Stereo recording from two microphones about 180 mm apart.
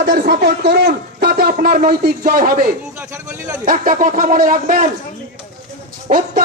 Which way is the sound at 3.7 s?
50° right (ahead or behind).